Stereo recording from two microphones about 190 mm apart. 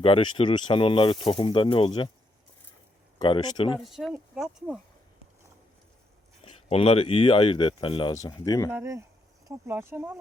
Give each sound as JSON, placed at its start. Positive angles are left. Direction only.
{"t": 0.0, "sound": "speech", "side_deg": 25}
{"t": 3.2, "sound": "speech", "side_deg": 25}
{"t": 3.8, "sound": "speech", "side_deg": 0}
{"t": 6.4, "sound": "speech", "side_deg": 30}
{"t": 8.7, "sound": "speech", "side_deg": -15}